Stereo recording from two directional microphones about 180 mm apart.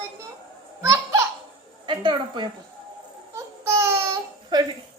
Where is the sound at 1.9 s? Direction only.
25° right (ahead or behind).